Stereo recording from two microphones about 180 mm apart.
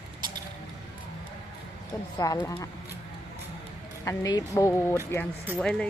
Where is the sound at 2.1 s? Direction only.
20° left (ahead or behind).